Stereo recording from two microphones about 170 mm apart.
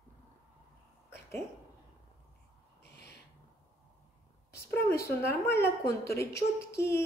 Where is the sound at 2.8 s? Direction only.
75° left (ahead or behind).